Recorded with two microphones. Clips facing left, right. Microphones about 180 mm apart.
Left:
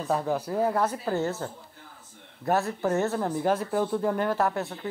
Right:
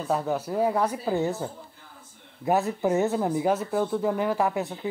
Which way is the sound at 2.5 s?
15° right (ahead or behind).